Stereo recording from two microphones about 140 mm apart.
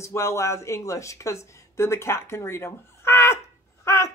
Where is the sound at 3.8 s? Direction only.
20° left (ahead or behind).